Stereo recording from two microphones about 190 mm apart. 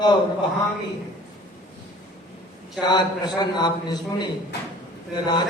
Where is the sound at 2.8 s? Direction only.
20° left (ahead or behind).